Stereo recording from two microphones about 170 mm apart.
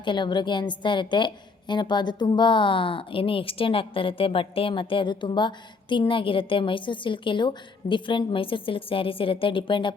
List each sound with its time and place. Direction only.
0.0 s a woman's voice: 25° left (ahead or behind)